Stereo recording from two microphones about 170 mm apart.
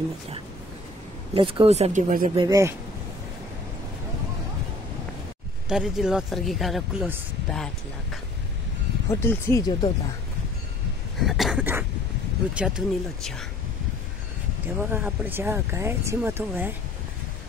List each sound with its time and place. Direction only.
1.3 s speech: 30° right (ahead or behind)
2.3 s speech: 20° right (ahead or behind)
5.7 s speech: 5° right (ahead or behind)
9.1 s speech: 15° left (ahead or behind)
11.1 s a sound: centre (ahead or behind)
12.5 s speech: 5° right (ahead or behind)
14.8 s speech: 10° right (ahead or behind)